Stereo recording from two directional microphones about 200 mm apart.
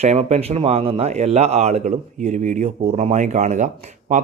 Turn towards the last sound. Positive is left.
turn(degrees=-40)  # may be behind; listen again after turning